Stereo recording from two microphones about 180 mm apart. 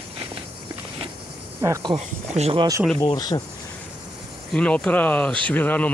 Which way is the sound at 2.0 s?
35° right (ahead or behind).